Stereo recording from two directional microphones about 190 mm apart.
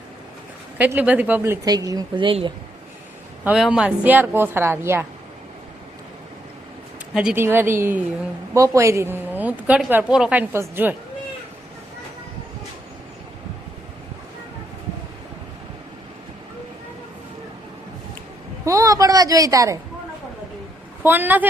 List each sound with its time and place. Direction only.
0.8 s a woman's voice: 10° right (ahead or behind); by 2.5 s 25° right (ahead or behind)
3.4 s a woman's voice: 5° right (ahead or behind)
7.1 s a woman's voice: 5° right (ahead or behind)
18.6 s a sound: 15° right (ahead or behind)
21.0 s a woman's voice: 10° right (ahead or behind)